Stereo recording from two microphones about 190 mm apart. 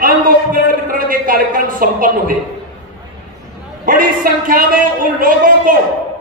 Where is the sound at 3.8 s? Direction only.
45° right (ahead or behind).